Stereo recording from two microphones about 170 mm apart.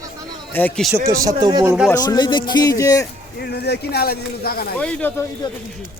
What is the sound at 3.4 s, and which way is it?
Speech, 75° left (ahead or behind).